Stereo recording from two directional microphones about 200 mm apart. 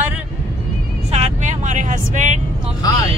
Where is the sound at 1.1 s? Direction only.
35° right (ahead or behind).